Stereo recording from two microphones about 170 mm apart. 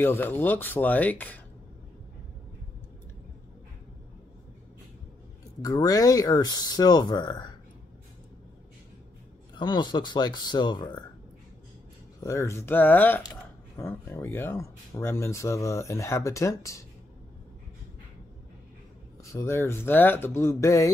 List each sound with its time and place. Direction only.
0.0 s speech: 10° left (ahead or behind)
5.6 s speech: 20° left (ahead or behind)
9.6 s speech: 25° left (ahead or behind)
12.2 s speech: 20° left (ahead or behind)
19.2 s speech: 15° left (ahead or behind)